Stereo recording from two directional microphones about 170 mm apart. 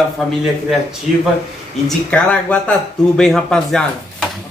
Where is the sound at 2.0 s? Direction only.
5° left (ahead or behind).